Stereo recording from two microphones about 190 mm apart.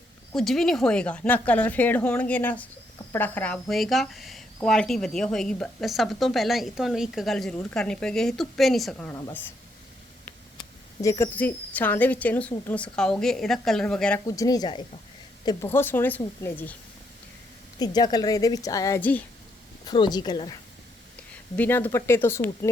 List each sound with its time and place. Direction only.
0.3 s a woman's voice: centre (ahead or behind)
11.0 s speech: 15° left (ahead or behind)
14.3 s a woman's voice: 20° left (ahead or behind)
17.7 s a woman's voice: 20° left (ahead or behind)
19.8 s a woman's voice: 20° left (ahead or behind)
21.5 s speech: 10° left (ahead or behind)